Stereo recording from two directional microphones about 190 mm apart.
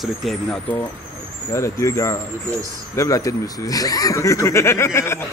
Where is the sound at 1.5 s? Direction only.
15° left (ahead or behind).